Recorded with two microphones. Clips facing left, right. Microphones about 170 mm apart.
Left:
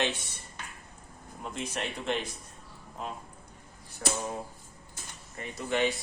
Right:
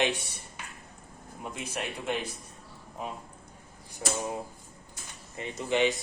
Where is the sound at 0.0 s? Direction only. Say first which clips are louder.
Right 3 dB; 15° right (ahead or behind).